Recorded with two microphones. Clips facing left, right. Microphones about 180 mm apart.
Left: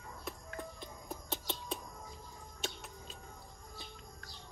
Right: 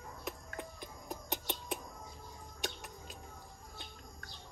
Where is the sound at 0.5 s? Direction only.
15° right (ahead or behind).